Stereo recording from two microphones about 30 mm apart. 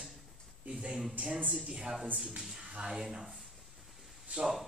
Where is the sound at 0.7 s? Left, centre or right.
Right.